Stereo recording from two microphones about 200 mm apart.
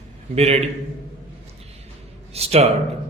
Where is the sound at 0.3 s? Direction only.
30° right (ahead or behind).